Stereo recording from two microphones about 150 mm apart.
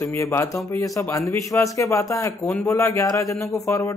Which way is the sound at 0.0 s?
20° left (ahead or behind).